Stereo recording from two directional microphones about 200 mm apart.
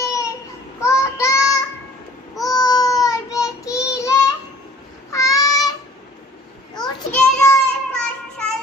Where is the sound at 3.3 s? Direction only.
15° left (ahead or behind).